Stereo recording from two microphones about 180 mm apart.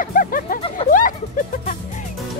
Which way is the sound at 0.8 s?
30° left (ahead or behind).